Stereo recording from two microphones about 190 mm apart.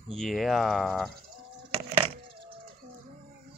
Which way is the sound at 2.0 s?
30° right (ahead or behind).